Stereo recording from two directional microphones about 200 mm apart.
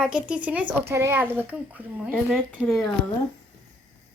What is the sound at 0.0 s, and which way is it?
Speech, 5° right (ahead or behind).